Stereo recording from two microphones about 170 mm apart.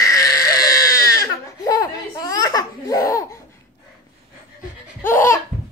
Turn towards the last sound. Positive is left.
turn(degrees=15)  # may be behind; listen again after turning